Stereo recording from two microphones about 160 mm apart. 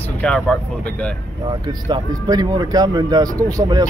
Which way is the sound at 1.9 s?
25° right (ahead or behind).